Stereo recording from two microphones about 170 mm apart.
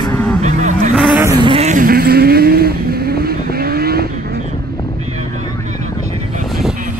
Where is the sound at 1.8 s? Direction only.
65° right (ahead or behind).